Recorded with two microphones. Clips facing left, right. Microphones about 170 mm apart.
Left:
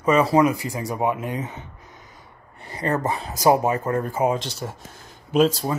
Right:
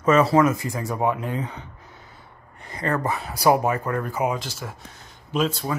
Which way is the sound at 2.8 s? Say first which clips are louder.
Left 1 dB; 20° left (ahead or behind).